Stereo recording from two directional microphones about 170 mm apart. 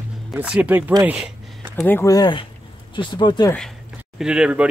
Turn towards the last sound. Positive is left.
turn(degrees=-5)  # may be behind; listen again after turning